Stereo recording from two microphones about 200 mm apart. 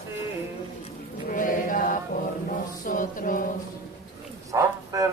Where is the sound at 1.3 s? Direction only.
40° left (ahead or behind).